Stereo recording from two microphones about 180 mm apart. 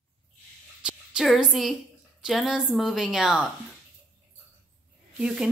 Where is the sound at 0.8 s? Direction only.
5° right (ahead or behind).